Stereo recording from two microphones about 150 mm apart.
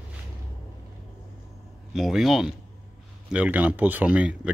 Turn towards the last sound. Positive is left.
turn(degrees=-10)  # may be behind; listen again after turning